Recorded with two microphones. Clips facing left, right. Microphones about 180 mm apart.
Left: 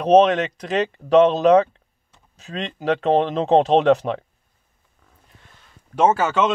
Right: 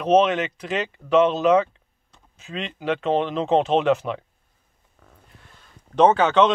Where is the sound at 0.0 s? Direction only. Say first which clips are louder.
Left 4 dB; 35° left (ahead or behind).